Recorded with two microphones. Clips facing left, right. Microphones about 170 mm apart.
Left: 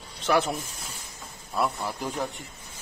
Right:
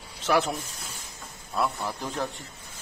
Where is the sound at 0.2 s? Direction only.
Centre (ahead or behind).